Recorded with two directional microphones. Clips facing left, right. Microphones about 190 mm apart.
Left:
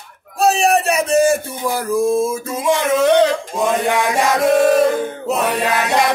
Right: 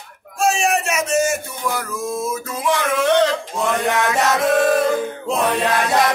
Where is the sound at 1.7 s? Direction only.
30° left (ahead or behind).